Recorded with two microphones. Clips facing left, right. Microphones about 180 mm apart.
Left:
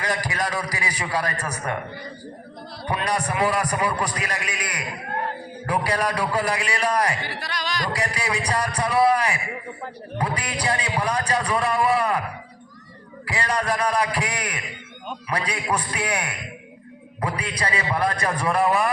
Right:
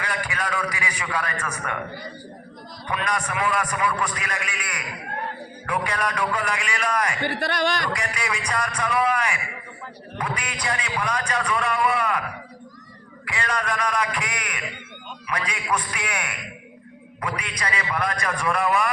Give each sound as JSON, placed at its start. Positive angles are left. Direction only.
{"t": 0.0, "sound": "a man's voice", "side_deg": 40}
{"t": 2.8, "sound": "a man's voice", "side_deg": 35}
{"t": 7.2, "sound": "a man's voice", "side_deg": -55}
{"t": 7.9, "sound": "a man's voice", "side_deg": 35}
{"t": 13.2, "sound": "a man's voice", "side_deg": 35}